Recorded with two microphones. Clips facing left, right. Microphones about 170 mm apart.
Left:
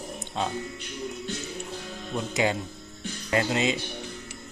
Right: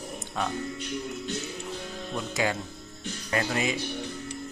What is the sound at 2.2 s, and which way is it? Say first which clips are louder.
Speech: left 3 dB; 20° left (ahead or behind).